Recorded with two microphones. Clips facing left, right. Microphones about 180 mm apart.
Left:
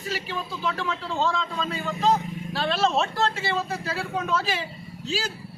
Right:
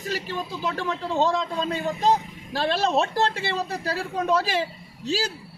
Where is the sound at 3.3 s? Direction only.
40° right (ahead or behind).